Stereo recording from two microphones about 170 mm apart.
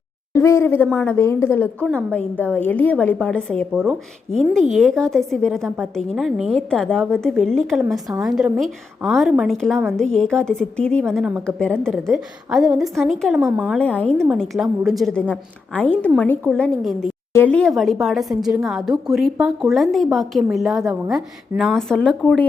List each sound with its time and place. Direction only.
0.3 s a woman's voice: 15° left (ahead or behind)